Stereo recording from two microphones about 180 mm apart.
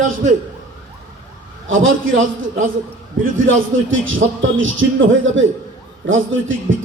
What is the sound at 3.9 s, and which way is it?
A man's voice, 90° right.